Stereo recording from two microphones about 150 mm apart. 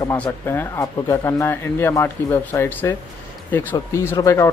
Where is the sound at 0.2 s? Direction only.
15° left (ahead or behind).